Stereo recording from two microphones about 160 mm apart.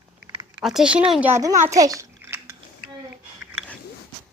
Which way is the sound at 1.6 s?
20° right (ahead or behind).